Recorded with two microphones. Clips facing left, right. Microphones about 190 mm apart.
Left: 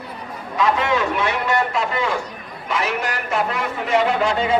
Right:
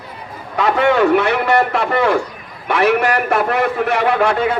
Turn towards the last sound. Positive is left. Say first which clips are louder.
# right 4 dB
turn(degrees=-60)  # may be behind; listen again after turning